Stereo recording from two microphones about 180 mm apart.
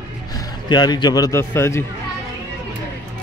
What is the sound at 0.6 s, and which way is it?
A man's voice, 25° left (ahead or behind).